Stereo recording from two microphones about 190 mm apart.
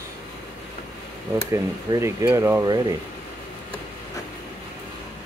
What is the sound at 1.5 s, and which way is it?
Speech, 15° right (ahead or behind).